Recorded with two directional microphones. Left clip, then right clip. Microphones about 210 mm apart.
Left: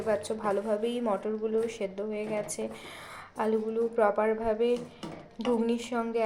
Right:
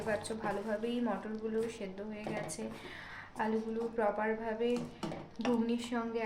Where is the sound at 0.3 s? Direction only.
25° left (ahead or behind).